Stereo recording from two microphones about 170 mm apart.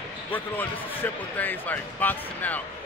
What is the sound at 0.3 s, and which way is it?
Speech, 10° left (ahead or behind).